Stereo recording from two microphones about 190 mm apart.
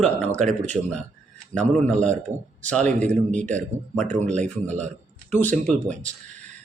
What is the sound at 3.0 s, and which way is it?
A man's voice, 40° right (ahead or behind).